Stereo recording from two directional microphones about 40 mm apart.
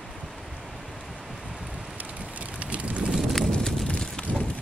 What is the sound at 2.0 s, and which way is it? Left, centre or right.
Vehicle, right.